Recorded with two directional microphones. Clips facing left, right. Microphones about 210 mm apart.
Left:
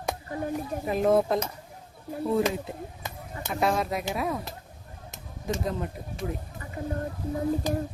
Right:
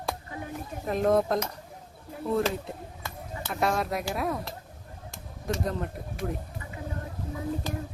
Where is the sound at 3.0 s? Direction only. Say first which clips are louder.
Right 1 dB; 20° left (ahead or behind).